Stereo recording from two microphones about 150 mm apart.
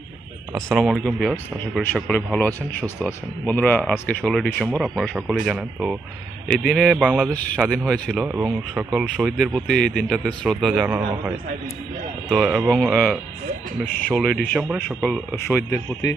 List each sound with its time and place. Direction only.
0.7 s speech: centre (ahead or behind)
7.3 s speech: 10° left (ahead or behind)
8.1 s speech: 10° right (ahead or behind)
12.3 s speech: centre (ahead or behind)
15.4 s speech: 15° left (ahead or behind)